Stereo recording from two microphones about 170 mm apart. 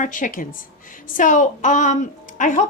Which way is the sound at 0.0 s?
50° left (ahead or behind).